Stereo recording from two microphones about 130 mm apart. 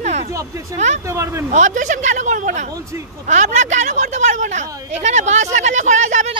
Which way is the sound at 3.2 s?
65° right (ahead or behind).